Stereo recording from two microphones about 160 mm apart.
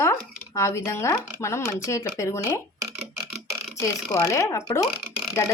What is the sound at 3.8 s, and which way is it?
Speech, 15° left (ahead or behind).